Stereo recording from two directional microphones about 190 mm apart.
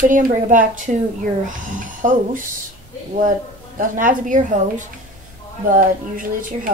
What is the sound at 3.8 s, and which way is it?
Speech, 45° right (ahead or behind).